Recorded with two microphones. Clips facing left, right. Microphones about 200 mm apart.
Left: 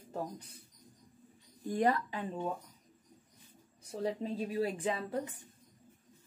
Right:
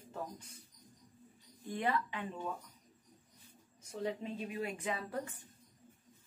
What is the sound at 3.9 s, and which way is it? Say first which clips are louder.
Speech: left 3 dB; 35° left (ahead or behind).